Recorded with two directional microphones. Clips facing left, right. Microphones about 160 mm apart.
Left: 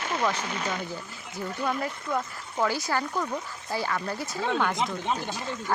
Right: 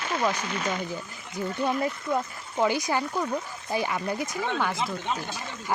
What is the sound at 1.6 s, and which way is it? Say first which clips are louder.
Speech: right 3 dB; 20° right (ahead or behind).